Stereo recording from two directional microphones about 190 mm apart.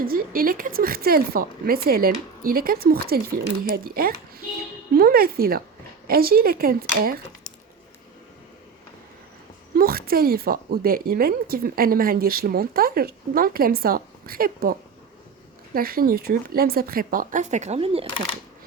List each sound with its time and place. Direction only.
0.0 s a woman's voice: 50° right (ahead or behind)
9.7 s a woman's voice: 50° right (ahead or behind); by 18.0 s 35° right (ahead or behind)